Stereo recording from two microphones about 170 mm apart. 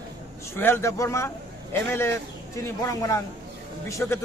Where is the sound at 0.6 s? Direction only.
15° left (ahead or behind).